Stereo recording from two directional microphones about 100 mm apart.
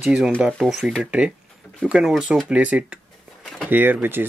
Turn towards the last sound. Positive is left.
turn(degrees=-20)  # may be behind; listen again after turning